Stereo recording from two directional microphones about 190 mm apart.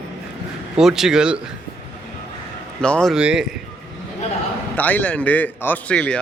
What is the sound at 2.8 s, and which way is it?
Speech, 5° left (ahead or behind).